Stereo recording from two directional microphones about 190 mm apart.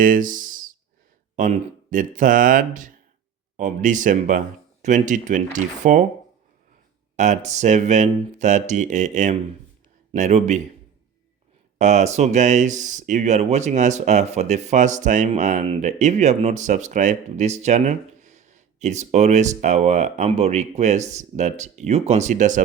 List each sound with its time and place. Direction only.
0.0 s a sound: 45° right (ahead or behind)
1.4 s speech: 45° right (ahead or behind)
7.2 s speech: 40° right (ahead or behind)
11.8 s speech: 40° right (ahead or behind)